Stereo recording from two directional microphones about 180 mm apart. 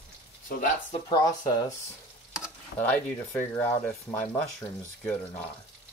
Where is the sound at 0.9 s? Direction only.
25° left (ahead or behind).